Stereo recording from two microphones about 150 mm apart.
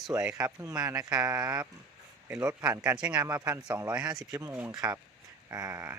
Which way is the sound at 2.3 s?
20° right (ahead or behind).